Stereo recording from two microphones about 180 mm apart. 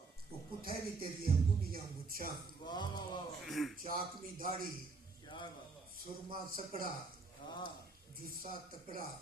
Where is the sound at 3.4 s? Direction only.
Centre (ahead or behind).